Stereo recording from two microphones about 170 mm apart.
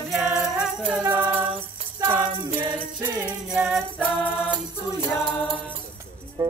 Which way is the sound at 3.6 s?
Centre (ahead or behind).